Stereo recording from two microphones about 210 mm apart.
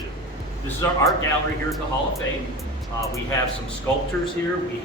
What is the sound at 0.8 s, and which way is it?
Speech, 10° left (ahead or behind).